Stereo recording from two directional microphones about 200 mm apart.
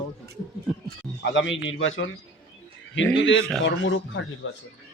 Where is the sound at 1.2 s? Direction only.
65° left (ahead or behind).